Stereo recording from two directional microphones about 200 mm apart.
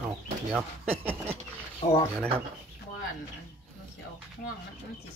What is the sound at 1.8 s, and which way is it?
Speech, 35° left (ahead or behind).